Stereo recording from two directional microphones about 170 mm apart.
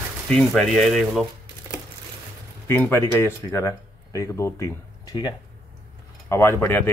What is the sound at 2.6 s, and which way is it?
Speech, 10° left (ahead or behind).